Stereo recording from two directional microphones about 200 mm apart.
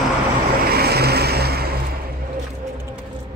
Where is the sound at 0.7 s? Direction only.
50° right (ahead or behind).